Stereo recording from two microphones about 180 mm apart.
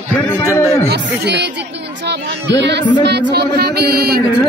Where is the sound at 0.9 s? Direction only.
70° right (ahead or behind).